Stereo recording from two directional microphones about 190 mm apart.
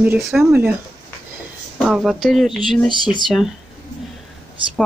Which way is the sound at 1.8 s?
Centre (ahead or behind).